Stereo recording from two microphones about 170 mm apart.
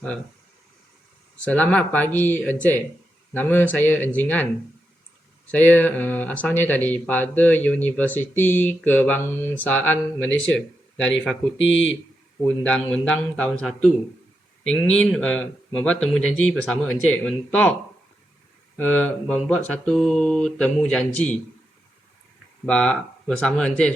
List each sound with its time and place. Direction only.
1.5 s speech: 10° left (ahead or behind)
5.5 s speech: 10° left (ahead or behind)
11.6 s speech: 90° left
12.4 s speech: 10° left (ahead or behind)
18.8 s speech: 10° left (ahead or behind)
22.6 s speech: 5° left (ahead or behind)